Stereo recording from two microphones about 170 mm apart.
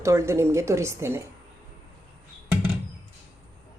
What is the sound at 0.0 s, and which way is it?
Cutlery, 15° right (ahead or behind).